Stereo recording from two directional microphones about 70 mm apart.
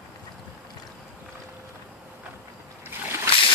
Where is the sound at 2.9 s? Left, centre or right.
Right.